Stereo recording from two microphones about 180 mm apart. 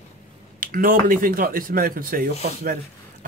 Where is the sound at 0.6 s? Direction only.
50° right (ahead or behind).